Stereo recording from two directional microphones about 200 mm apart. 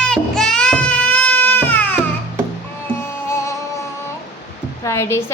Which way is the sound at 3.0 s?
10° left (ahead or behind).